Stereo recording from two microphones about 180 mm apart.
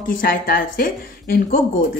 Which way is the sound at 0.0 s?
50° left (ahead or behind).